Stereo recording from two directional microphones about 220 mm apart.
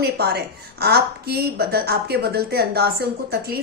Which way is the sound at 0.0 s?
45° right (ahead or behind).